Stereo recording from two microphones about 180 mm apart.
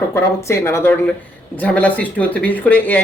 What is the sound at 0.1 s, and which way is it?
Speech, 15° left (ahead or behind).